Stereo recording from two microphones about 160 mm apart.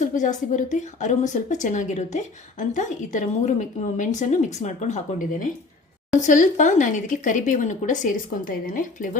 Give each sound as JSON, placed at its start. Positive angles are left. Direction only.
{"t": 0.0, "sound": "a woman's voice", "side_deg": 50}